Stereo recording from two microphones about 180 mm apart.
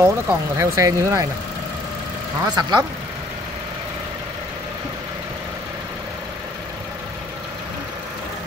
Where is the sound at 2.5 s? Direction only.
25° right (ahead or behind).